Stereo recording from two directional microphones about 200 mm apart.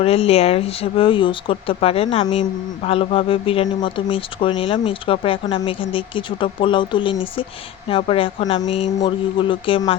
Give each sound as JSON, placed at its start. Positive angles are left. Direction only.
{"t": 0.0, "sound": "speech", "side_deg": 30}